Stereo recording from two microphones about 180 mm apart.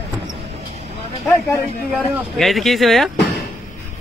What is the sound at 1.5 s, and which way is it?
Speech, centre (ahead or behind).